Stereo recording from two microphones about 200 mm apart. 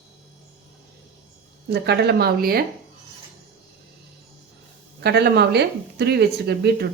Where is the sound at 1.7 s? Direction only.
55° right (ahead or behind).